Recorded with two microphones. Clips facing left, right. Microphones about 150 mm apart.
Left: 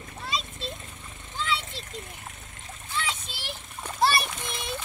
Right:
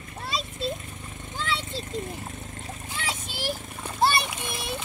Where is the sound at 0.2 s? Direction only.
5° right (ahead or behind).